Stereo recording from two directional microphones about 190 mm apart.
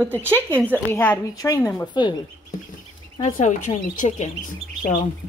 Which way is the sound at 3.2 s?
40° left (ahead or behind).